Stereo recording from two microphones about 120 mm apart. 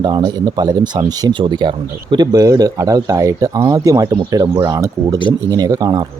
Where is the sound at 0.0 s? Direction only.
35° right (ahead or behind).